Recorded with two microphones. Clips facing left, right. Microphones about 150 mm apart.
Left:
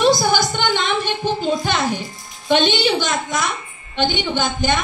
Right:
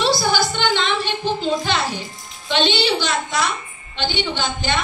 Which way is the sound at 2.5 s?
50° left (ahead or behind).